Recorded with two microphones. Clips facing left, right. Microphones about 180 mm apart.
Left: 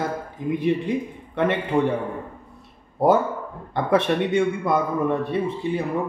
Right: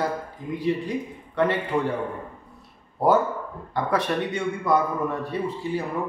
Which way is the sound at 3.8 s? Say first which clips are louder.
Left 5 dB; 25° left (ahead or behind).